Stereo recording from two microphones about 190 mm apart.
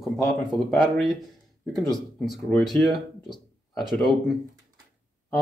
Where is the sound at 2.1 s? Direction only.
Centre (ahead or behind).